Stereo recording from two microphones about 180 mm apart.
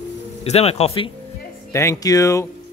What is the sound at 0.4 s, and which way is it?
Speech, 35° left (ahead or behind).